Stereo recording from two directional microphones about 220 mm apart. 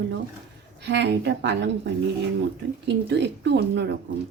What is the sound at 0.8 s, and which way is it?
Speech, 55° right (ahead or behind).